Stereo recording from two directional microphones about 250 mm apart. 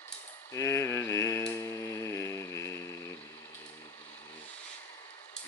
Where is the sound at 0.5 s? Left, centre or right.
Centre.